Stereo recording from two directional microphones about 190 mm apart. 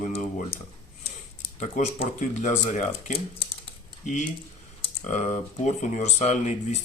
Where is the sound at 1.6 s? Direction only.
40° left (ahead or behind).